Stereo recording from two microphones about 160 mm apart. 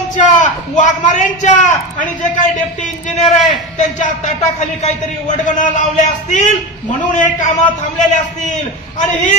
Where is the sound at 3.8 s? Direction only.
50° left (ahead or behind).